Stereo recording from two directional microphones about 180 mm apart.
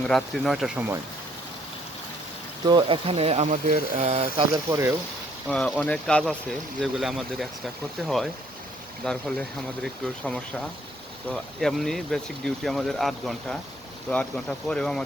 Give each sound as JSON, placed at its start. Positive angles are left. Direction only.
{"t": 0.0, "sound": "speech", "side_deg": 5}
{"t": 2.6, "sound": "speech", "side_deg": -25}
{"t": 4.4, "sound": "speech", "side_deg": -20}
{"t": 5.5, "sound": "speech", "side_deg": 5}